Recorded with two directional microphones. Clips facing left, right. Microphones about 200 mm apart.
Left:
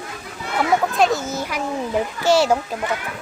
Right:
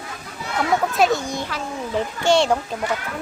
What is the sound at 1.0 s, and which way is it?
A child's voice, centre (ahead or behind).